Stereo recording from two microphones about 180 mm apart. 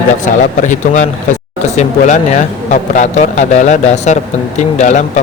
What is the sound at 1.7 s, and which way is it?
A man's voice, 40° left (ahead or behind).